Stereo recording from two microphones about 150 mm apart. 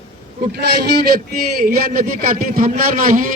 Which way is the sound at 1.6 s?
75° right (ahead or behind).